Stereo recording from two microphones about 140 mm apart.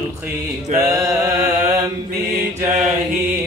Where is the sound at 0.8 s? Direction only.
20° right (ahead or behind).